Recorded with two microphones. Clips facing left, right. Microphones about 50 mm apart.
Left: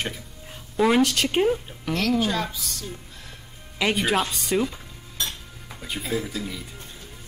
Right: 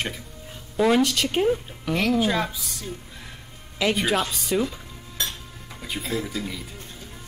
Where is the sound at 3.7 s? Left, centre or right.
Centre.